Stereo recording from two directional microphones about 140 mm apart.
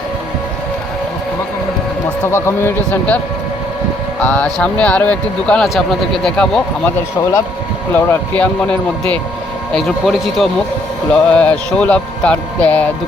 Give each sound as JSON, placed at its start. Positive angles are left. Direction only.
{"t": 2.2, "sound": "speech", "side_deg": 20}
{"t": 4.2, "sound": "speech", "side_deg": 10}
{"t": 7.9, "sound": "speech", "side_deg": 10}
{"t": 9.7, "sound": "speech", "side_deg": 0}